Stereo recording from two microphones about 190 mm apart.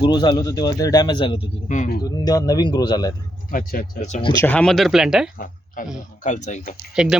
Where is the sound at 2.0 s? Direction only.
20° left (ahead or behind).